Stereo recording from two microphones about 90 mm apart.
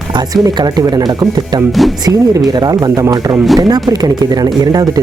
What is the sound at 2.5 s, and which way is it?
Speech, 45° right (ahead or behind).